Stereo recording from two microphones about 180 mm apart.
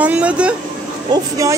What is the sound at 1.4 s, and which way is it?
Speech, 20° right (ahead or behind).